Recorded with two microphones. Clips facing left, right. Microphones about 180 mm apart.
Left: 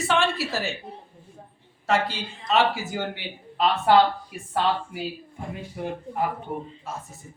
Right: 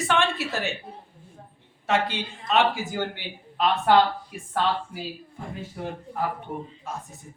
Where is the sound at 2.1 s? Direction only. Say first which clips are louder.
Even; 55° right (ahead or behind).